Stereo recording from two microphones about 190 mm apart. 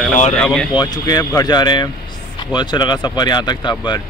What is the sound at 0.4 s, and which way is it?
Speech, 5° left (ahead or behind).